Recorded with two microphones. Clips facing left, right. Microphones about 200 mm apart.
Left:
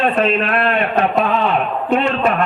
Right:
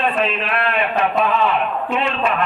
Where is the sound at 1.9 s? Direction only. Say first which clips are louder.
Left 7 dB; 45° left (ahead or behind).